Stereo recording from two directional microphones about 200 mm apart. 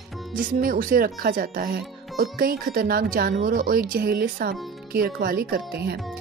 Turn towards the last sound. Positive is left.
turn(degrees=-50)  # may be behind; listen again after turning